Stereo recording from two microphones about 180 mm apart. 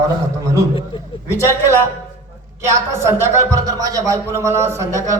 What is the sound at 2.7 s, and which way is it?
A man's voice, 15° right (ahead or behind).